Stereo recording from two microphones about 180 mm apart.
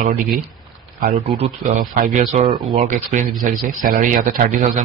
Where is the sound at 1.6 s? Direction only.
50° right (ahead or behind).